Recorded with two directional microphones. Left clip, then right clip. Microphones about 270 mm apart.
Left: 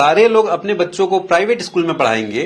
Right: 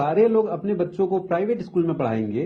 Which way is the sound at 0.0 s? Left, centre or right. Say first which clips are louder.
Left 8 dB; centre.